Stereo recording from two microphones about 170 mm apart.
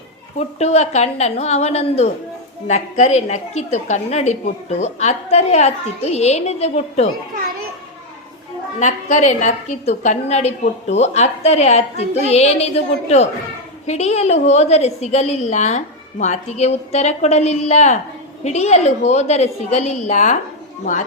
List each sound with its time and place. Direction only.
0.3 s a woman's voice: 40° left (ahead or behind)
8.8 s a woman's voice: 45° left (ahead or behind)